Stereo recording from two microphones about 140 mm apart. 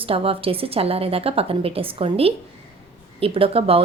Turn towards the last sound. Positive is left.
turn(degrees=-45)  # may be behind; listen again after turning